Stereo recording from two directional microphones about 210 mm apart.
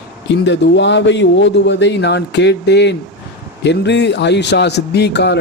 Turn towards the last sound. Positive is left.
turn(degrees=55)  # may be behind; listen again after turning